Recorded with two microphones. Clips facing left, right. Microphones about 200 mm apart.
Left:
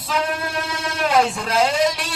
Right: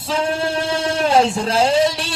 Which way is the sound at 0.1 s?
30° right (ahead or behind).